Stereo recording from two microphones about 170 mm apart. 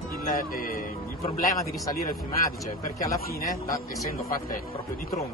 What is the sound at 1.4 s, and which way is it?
Speech, 20° left (ahead or behind).